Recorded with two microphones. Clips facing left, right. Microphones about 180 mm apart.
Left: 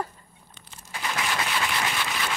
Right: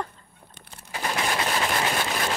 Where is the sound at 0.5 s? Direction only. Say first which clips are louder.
Right 4 dB; 45° right (ahead or behind).